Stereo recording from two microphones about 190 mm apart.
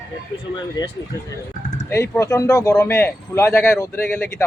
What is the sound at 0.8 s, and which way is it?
A man's voice, 20° left (ahead or behind).